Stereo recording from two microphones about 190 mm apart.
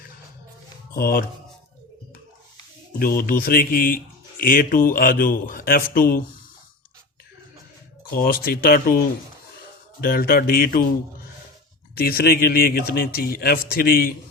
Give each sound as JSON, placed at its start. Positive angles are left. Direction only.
{"t": 0.9, "sound": "speech", "side_deg": 55}
{"t": 3.0, "sound": "speech", "side_deg": 50}
{"t": 8.1, "sound": "speech", "side_deg": 50}
{"t": 10.0, "sound": "speech", "side_deg": 50}
{"t": 11.9, "sound": "speech", "side_deg": 55}